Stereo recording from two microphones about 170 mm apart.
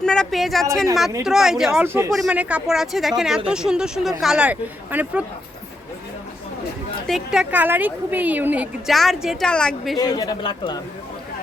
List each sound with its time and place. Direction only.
0.0 s a sound: 5° left (ahead or behind)
1.2 s speech: 5° right (ahead or behind)
7.1 s a woman's voice: 5° right (ahead or behind)
8.9 s speech: centre (ahead or behind)
10.0 s a man's voice: 20° left (ahead or behind)